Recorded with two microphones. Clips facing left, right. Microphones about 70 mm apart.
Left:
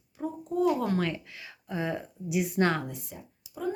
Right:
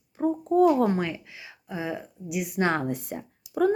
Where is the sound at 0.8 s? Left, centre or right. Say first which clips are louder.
Right 3 dB; right; by 2.6 s centre.